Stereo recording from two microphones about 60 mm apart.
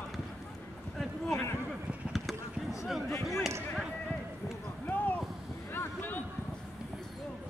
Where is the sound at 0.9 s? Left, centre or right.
Centre.